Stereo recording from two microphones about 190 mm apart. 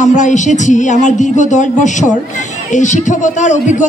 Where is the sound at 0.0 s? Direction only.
40° left (ahead or behind).